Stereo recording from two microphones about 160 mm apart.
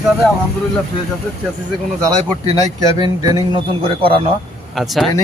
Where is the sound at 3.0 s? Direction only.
20° right (ahead or behind).